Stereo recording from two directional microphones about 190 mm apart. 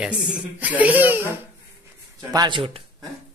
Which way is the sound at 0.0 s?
5° right (ahead or behind).